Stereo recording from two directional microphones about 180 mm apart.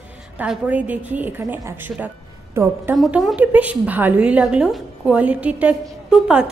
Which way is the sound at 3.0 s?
Centre (ahead or behind).